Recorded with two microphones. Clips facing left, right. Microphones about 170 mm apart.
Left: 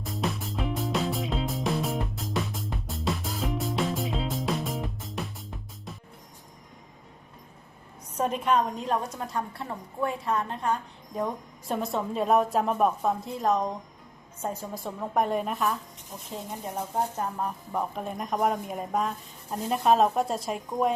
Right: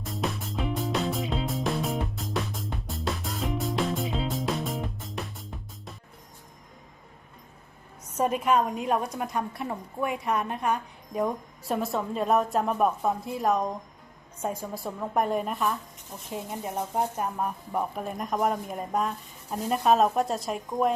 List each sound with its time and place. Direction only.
0.0 s music: centre (ahead or behind)
8.1 s a woman's voice: 5° right (ahead or behind)
15.1 s a woman's voice: centre (ahead or behind)